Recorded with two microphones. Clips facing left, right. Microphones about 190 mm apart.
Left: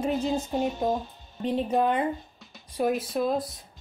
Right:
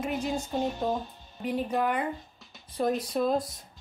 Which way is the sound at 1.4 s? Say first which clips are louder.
Left 4 dB; 25° left (ahead or behind).